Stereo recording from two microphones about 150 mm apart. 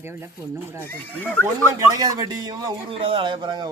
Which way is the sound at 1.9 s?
25° right (ahead or behind).